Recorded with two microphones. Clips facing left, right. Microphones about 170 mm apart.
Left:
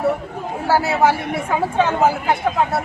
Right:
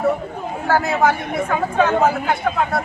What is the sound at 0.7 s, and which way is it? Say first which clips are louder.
Speech: left 1 dB; 5° left (ahead or behind).